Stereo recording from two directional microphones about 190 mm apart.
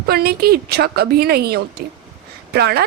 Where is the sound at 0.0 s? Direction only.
55° right (ahead or behind).